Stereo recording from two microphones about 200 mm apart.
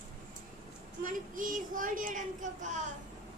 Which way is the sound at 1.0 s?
40° right (ahead or behind).